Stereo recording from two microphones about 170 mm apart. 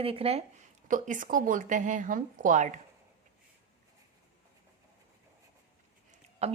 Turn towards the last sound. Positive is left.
turn(degrees=-35)  # may be behind; listen again after turning